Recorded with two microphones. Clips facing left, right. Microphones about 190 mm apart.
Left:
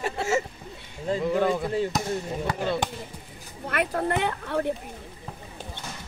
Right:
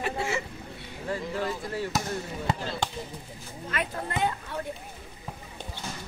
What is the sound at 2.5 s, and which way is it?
Speech, 25° right (ahead or behind).